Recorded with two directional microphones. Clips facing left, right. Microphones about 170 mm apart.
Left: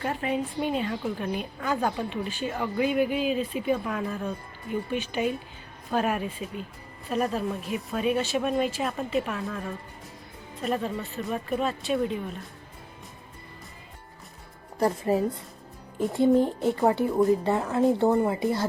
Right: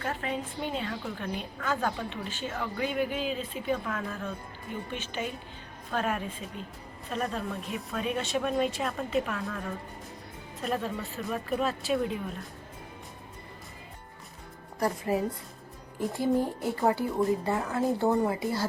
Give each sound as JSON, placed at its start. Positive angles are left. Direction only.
{"t": 0.0, "sound": "a woman's voice", "side_deg": 15}
{"t": 10.6, "sound": "speech", "side_deg": 0}
{"t": 14.8, "sound": "speech", "side_deg": 25}